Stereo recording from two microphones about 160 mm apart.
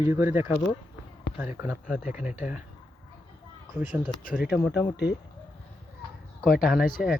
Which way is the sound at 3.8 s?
5° right (ahead or behind).